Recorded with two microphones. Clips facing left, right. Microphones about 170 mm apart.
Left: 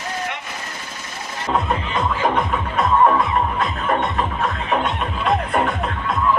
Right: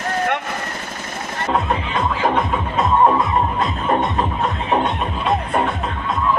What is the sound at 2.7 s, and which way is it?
Music, 20° right (ahead or behind).